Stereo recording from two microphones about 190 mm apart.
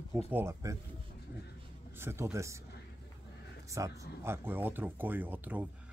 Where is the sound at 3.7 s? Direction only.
15° right (ahead or behind).